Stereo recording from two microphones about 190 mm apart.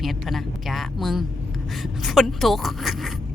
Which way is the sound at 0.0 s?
Centre (ahead or behind).